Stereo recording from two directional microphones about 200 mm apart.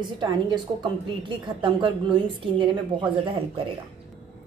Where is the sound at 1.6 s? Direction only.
25° right (ahead or behind).